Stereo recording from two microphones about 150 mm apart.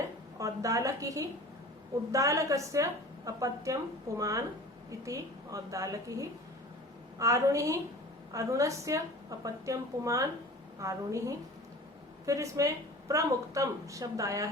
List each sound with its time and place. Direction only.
0.3 s a woman's voice: 20° right (ahead or behind)